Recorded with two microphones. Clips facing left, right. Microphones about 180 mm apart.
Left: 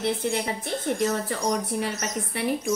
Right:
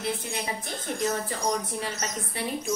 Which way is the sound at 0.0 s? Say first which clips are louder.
Left 6 dB; 65° left (ahead or behind).